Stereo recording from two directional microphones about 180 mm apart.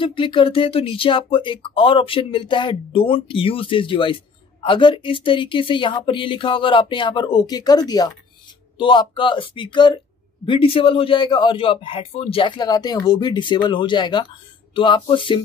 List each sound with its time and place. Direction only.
0.0 s speech: 30° left (ahead or behind)